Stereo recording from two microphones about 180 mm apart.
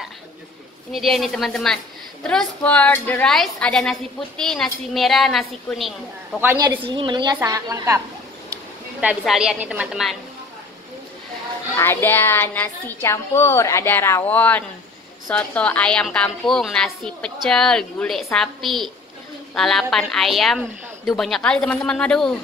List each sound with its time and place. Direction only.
0.9 s a woman's voice: centre (ahead or behind)
6.8 s a woman's voice: 25° right (ahead or behind)
9.2 s a woman's voice: centre (ahead or behind)
11.7 s a woman's voice: 15° left (ahead or behind)